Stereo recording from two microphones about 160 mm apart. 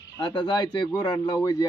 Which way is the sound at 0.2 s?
30° left (ahead or behind).